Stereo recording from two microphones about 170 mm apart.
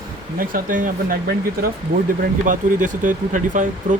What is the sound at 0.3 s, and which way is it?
Speech, 55° right (ahead or behind).